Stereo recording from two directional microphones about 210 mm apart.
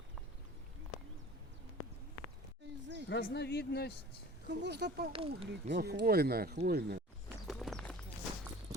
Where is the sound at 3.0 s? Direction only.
55° left (ahead or behind).